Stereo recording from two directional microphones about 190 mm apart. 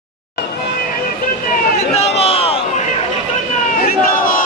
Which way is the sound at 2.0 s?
35° left (ahead or behind).